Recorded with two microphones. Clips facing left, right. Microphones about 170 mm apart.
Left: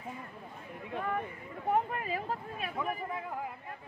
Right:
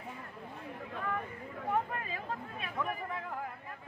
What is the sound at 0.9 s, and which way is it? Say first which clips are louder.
Chatter: left 3 dB; 30° left (ahead or behind).